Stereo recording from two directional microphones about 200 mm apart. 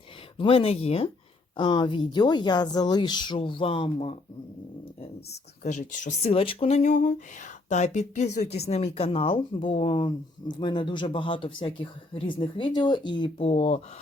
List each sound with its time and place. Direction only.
0.3 s speech: 30° left (ahead or behind)
5.6 s speech: 35° left (ahead or behind)